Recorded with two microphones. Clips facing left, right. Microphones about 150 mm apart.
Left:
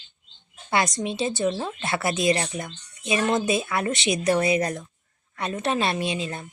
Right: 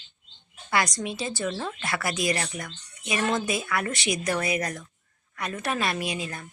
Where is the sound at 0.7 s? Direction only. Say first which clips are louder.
Left 2 dB; 25° left (ahead or behind).